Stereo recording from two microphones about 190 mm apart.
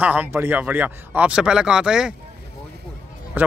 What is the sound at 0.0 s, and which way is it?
Speech, 10° right (ahead or behind).